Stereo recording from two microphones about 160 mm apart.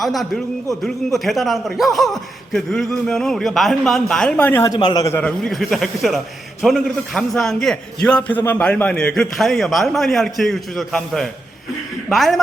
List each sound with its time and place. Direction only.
0.0 s a man's voice: centre (ahead or behind)
4.7 s a man's voice: 25° left (ahead or behind)
5.1 s a man's voice: 5° left (ahead or behind)